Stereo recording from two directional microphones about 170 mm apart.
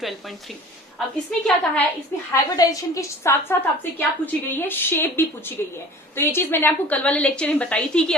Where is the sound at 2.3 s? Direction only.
20° left (ahead or behind).